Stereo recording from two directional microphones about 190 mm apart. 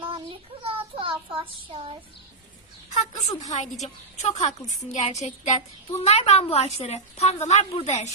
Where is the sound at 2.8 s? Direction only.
40° left (ahead or behind).